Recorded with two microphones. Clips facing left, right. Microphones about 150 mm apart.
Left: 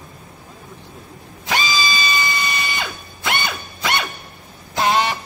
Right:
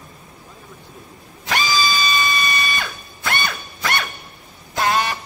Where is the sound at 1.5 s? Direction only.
20° left (ahead or behind).